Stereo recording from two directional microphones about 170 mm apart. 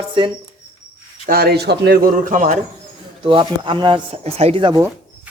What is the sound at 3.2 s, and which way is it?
Speech, 30° right (ahead or behind).